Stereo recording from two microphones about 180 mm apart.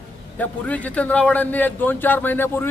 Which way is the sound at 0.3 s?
10° left (ahead or behind).